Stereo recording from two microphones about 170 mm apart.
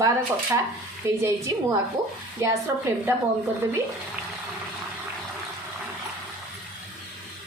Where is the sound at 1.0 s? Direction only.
15° right (ahead or behind).